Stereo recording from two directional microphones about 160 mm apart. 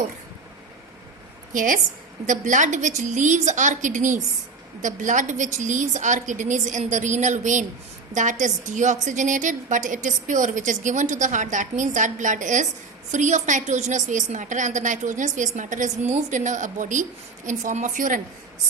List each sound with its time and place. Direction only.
1.5 s a woman's voice: 55° right (ahead or behind)